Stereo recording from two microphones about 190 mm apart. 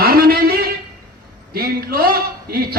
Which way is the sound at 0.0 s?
50° right (ahead or behind).